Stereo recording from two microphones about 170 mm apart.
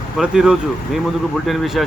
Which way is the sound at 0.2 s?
5° right (ahead or behind).